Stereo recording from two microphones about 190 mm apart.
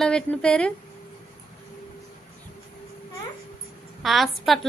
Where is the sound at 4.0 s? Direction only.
Centre (ahead or behind).